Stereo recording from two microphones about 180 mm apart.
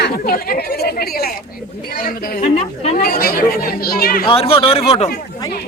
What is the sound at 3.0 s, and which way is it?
Speech, 55° left (ahead or behind).